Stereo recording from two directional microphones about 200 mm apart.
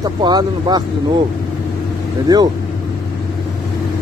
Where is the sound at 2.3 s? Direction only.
20° right (ahead or behind).